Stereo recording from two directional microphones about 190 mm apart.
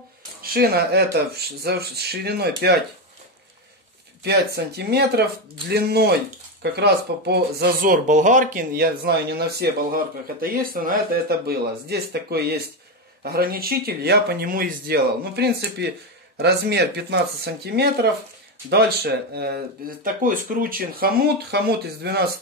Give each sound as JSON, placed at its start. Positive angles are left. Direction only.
{"t": 0.4, "sound": "speech", "side_deg": -55}
{"t": 4.2, "sound": "speech", "side_deg": -60}